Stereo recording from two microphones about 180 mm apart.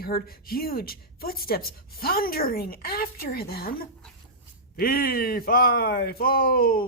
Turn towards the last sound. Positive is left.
turn(degrees=55)  # may be behind; listen again after turning